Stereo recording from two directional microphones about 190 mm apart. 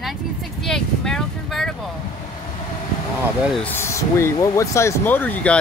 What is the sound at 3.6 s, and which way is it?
Speech, 10° left (ahead or behind).